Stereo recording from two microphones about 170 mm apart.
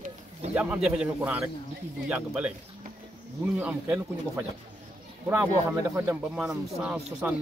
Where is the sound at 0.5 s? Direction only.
10° right (ahead or behind).